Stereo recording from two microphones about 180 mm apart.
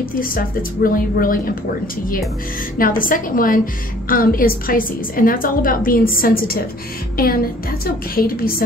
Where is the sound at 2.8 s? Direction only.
50° left (ahead or behind).